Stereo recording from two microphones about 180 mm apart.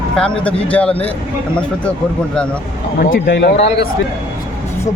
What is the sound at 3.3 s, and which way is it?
Speech, 80° left.